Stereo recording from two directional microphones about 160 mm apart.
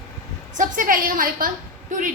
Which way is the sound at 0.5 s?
55° right (ahead or behind).